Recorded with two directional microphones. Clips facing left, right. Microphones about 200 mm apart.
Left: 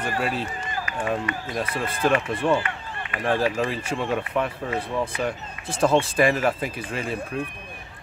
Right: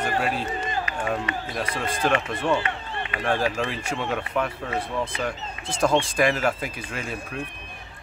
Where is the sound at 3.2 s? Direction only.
5° left (ahead or behind).